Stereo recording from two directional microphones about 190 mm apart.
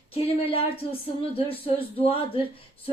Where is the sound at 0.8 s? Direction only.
25° left (ahead or behind).